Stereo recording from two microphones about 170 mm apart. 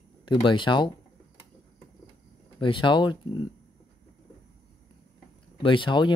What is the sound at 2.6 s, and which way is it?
Speech, 30° left (ahead or behind).